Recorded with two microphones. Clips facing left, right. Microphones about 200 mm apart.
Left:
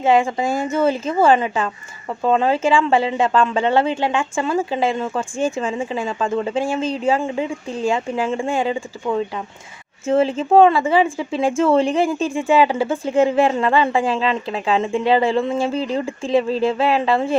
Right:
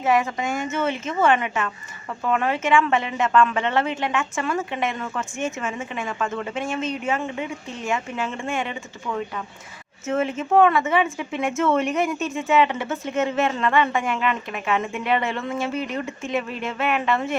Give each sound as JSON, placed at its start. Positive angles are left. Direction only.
{"t": 0.0, "sound": "a woman's voice", "side_deg": 25}